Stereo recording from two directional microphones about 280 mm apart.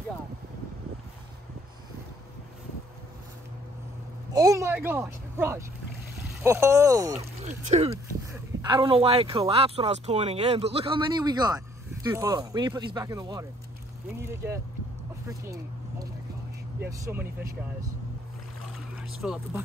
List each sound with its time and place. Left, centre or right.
4.3 s speech: centre
7.2 s speech: right
7.9 s speech: centre
19.2 s speech: centre